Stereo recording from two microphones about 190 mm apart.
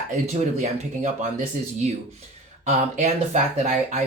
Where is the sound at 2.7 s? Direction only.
40° right (ahead or behind).